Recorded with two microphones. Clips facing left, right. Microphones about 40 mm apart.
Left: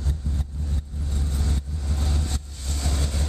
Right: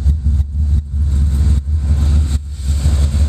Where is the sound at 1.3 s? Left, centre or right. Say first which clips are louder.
Right 8 dB; right.